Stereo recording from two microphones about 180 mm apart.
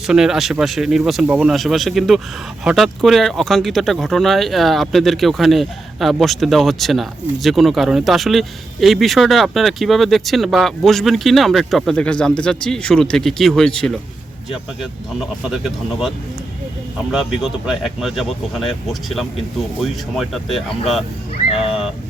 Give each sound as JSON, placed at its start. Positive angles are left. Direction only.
{"t": 0.1, "sound": "speech", "side_deg": -5}
{"t": 21.5, "sound": "speech", "side_deg": 30}